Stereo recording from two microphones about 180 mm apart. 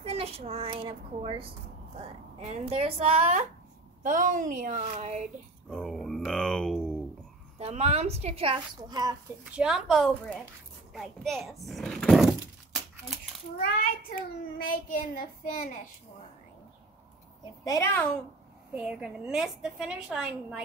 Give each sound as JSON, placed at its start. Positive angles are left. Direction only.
{"t": 0.0, "sound": "a child's voice", "side_deg": -35}
{"t": 5.7, "sound": "a woman's voice", "side_deg": 5}
{"t": 7.5, "sound": "speech", "side_deg": -35}
{"t": 9.4, "sound": "a woman's voice", "side_deg": -5}
{"t": 10.9, "sound": "a sound", "side_deg": 0}
{"t": 13.6, "sound": "a child's voice", "side_deg": 55}
{"t": 17.6, "sound": "a child's voice", "side_deg": 15}
{"t": 18.7, "sound": "a woman's voice", "side_deg": -5}